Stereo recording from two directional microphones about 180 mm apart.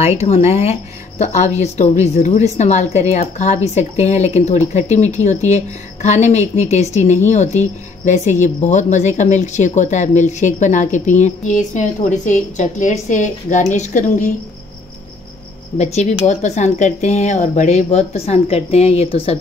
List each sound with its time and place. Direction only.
0.0 s a woman's voice: 35° left (ahead or behind)
15.8 s a woman's voice: 40° left (ahead or behind)